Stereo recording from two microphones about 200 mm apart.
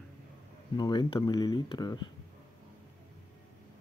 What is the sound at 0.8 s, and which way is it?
Speech, 20° left (ahead or behind).